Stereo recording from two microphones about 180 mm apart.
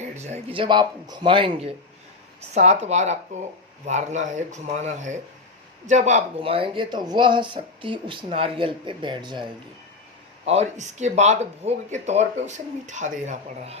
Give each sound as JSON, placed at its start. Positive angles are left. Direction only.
{"t": 0.2, "sound": "speech", "side_deg": -40}
{"t": 2.5, "sound": "speech", "side_deg": -40}
{"t": 10.4, "sound": "speech", "side_deg": -35}